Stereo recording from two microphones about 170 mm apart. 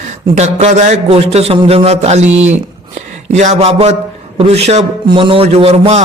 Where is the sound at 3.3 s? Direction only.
40° right (ahead or behind).